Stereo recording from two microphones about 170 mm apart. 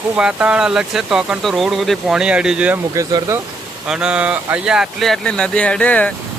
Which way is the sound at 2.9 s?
20° right (ahead or behind).